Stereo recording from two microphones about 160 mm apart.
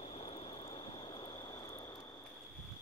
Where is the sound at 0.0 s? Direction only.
35° left (ahead or behind).